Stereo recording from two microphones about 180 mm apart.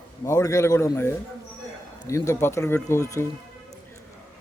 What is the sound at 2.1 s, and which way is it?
Speech, 15° left (ahead or behind).